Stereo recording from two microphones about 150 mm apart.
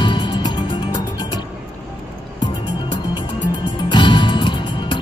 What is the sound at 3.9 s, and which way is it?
Music, 30° left (ahead or behind).